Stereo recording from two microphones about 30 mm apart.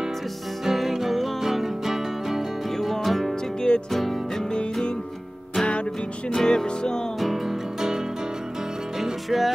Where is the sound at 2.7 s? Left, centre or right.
Centre.